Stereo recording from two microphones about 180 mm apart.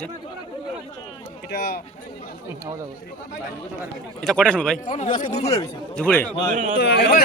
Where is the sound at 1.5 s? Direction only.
60° left (ahead or behind).